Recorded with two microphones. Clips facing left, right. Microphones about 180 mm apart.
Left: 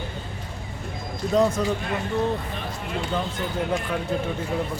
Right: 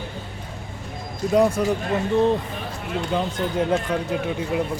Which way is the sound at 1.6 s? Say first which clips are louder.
Right 3 dB; 10° right (ahead or behind).